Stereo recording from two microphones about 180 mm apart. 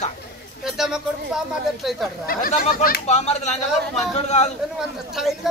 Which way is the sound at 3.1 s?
40° left (ahead or behind).